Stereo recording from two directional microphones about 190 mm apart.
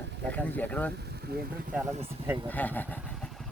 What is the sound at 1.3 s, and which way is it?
Speech, 55° right (ahead or behind).